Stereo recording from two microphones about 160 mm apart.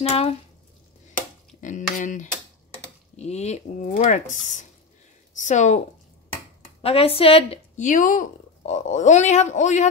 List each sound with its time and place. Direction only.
0.0 s speech: 40° left (ahead or behind)
1.6 s speech: 50° left (ahead or behind)
6.8 s speech: 35° left (ahead or behind)